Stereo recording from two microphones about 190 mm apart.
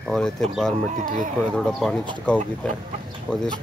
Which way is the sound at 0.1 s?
Centre (ahead or behind).